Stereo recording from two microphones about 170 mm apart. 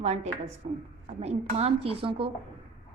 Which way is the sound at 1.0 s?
40° right (ahead or behind).